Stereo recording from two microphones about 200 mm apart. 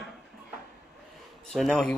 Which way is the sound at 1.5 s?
Centre (ahead or behind).